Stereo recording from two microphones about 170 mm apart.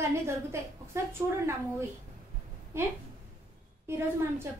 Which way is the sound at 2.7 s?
15° right (ahead or behind).